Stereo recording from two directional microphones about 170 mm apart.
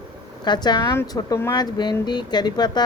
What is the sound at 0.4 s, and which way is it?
Speech, 25° left (ahead or behind).